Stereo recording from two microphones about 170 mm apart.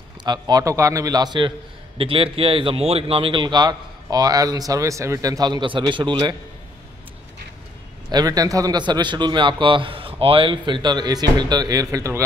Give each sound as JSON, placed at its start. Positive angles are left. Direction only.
{"t": 0.2, "sound": "a man's voice", "side_deg": -25}
{"t": 8.1, "sound": "a man's voice", "side_deg": -20}